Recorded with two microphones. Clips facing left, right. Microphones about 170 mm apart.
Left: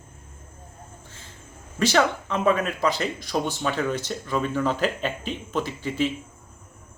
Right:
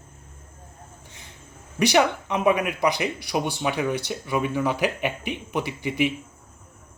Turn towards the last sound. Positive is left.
turn(degrees=-15)  # may be behind; listen again after turning